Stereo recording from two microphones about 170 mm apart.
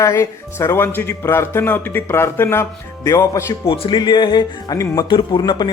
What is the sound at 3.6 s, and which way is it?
Speech, 30° left (ahead or behind).